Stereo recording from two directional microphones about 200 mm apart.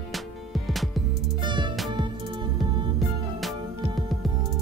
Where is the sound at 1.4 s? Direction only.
25° right (ahead or behind).